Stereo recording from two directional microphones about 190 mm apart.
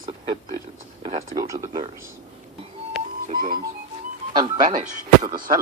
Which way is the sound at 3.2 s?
50° right (ahead or behind).